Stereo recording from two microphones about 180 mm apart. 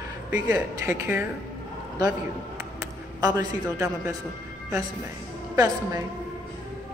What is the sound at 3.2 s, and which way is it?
Speech, 20° right (ahead or behind).